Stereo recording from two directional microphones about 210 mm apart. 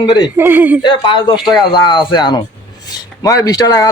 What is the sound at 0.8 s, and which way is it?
A man's voice, 20° left (ahead or behind).